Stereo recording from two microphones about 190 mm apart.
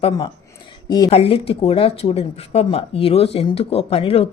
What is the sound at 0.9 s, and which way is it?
Speech, 20° left (ahead or behind).